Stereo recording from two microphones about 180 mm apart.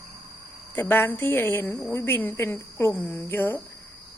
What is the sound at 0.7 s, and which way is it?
Speech, 10° left (ahead or behind).